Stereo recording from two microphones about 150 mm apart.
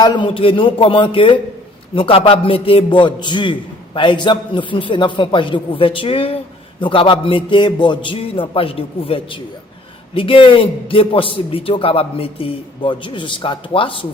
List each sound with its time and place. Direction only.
0.0 s a man's voice: 30° left (ahead or behind)